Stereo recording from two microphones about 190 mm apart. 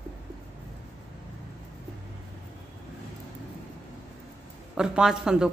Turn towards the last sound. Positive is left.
turn(degrees=-5)  # may be behind; listen again after turning